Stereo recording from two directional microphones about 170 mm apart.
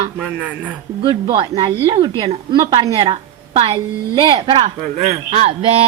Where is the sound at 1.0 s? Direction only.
30° right (ahead or behind).